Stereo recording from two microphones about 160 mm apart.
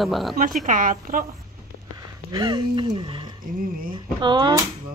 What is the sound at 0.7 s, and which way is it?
Speech, 55° right (ahead or behind).